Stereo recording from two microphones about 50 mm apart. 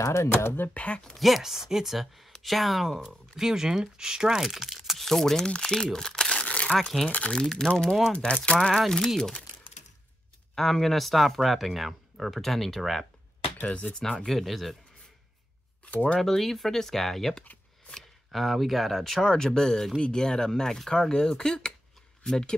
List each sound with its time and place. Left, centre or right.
0.3 s speech: left
0.7 s speech: left
1.0 s speech: centre
5.9 s crumpling: centre
6.8 s speech: centre
7.1 s speech: left
7.4 s speech: centre
8.7 s speech: centre
10.5 s speech: centre
13.7 s speech: left
14.2 s speech: centre
15.8 s speech: left
16.2 s speech: centre